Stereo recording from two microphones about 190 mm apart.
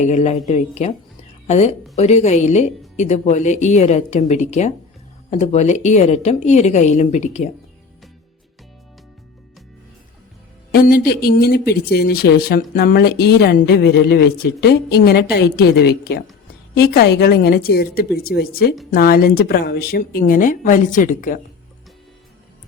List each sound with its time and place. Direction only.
0.0 s speech: 35° left (ahead or behind)
10.7 s speech: 50° left (ahead or behind)